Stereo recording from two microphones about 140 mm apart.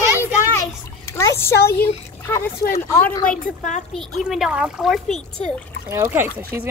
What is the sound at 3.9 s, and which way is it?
Speech, centre (ahead or behind).